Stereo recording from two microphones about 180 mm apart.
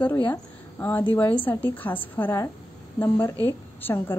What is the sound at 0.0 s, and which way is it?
A woman's voice, 10° left (ahead or behind).